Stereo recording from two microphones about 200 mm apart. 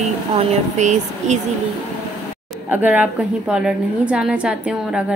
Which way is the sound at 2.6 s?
10° right (ahead or behind).